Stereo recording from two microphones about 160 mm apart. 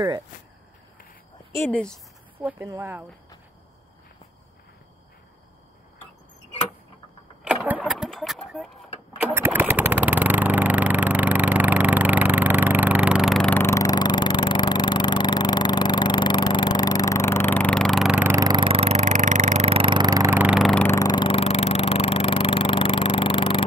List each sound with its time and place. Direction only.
1.5 s speech: 15° left (ahead or behind)
2.6 s speech: 15° right (ahead or behind)
7.4 s vehicle: 10° right (ahead or behind)
9.2 s engine: 15° right (ahead or behind)
18.3 s a sound: 25° right (ahead or behind)
20.2 s vehicle: 10° right (ahead or behind)
20.8 s a sound: 20° left (ahead or behind)